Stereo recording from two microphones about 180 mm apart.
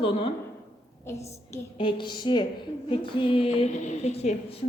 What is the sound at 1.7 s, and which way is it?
A woman's voice, 25° left (ahead or behind).